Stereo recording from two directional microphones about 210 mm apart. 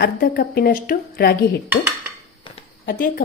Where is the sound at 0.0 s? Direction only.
45° left (ahead or behind).